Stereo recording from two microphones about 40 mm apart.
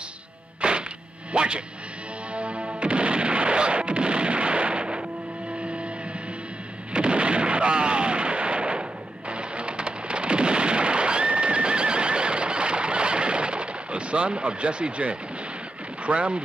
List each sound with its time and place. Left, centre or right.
0.6 s music: right
1.3 s speech: right
2.3 s music: right
6.9 s artillery fire: right
9.3 s thunder: right
16.1 s speech: right